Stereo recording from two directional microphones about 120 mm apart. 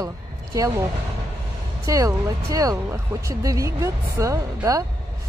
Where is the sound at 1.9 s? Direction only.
30° right (ahead or behind).